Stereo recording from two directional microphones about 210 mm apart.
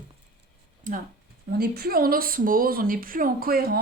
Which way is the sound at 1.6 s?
45° right (ahead or behind).